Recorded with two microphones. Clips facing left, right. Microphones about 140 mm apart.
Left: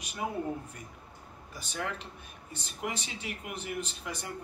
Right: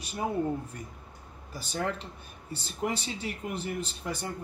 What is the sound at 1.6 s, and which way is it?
Speech, 35° right (ahead or behind).